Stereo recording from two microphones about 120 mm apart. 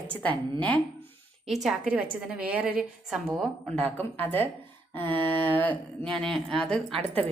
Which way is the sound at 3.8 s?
15° left (ahead or behind).